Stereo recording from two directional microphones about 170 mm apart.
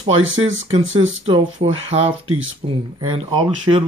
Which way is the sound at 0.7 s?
35° right (ahead or behind).